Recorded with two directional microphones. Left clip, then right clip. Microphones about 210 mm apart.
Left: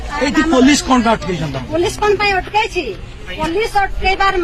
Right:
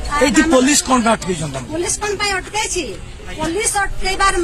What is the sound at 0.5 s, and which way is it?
Speech, 60° right (ahead or behind).